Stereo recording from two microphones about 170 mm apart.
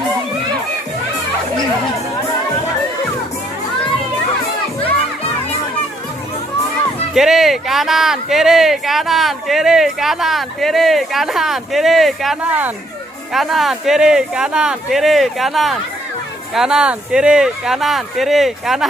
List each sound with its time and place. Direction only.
7.2 s speech: centre (ahead or behind)